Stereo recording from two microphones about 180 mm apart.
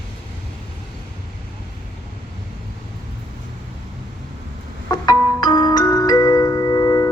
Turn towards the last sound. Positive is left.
turn(degrees=15)  # may be behind; listen again after turning